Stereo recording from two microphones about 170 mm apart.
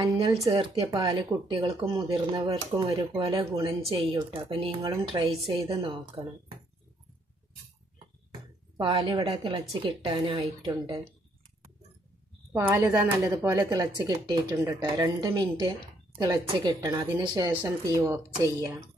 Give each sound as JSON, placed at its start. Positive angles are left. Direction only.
{"t": 0.5, "sound": "speech", "side_deg": -30}
{"t": 8.7, "sound": "speech", "side_deg": -30}
{"t": 12.5, "sound": "speech", "side_deg": -15}
{"t": 17.6, "sound": "speech", "side_deg": -15}